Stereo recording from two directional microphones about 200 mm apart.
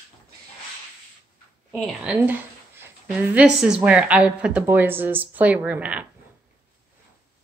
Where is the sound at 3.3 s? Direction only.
5° right (ahead or behind).